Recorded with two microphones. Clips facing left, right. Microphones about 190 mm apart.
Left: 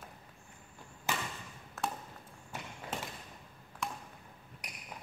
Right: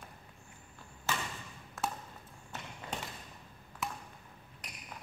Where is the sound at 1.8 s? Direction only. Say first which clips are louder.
Even; centre (ahead or behind).